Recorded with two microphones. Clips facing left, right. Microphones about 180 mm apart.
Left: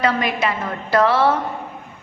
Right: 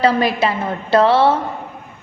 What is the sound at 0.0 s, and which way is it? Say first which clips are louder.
A woman's voice: right 4 dB; 35° right (ahead or behind).